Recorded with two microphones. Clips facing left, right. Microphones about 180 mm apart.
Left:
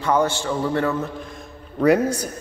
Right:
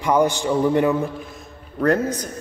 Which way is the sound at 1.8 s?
10° left (ahead or behind).